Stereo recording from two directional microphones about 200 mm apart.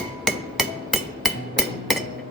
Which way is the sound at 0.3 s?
Centre (ahead or behind).